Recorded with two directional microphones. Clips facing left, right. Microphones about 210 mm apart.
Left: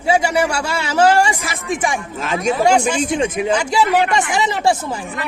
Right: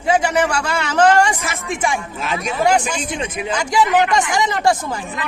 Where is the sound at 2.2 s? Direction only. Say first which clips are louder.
Left 4 dB; 45° left (ahead or behind).